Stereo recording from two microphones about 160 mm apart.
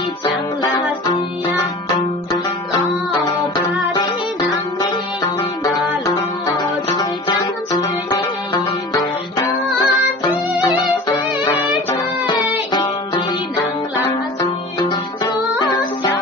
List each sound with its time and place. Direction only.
0.2 s music: 25° left (ahead or behind)
3.1 s music: 25° left (ahead or behind)
11.2 s music: 5° right (ahead or behind)
14.8 s music: 25° left (ahead or behind)